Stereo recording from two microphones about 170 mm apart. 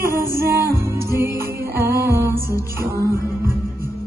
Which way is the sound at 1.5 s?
65° right (ahead or behind).